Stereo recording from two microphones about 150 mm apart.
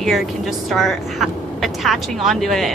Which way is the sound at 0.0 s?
Centre (ahead or behind).